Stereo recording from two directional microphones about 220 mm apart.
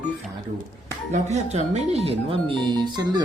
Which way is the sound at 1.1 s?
30° right (ahead or behind).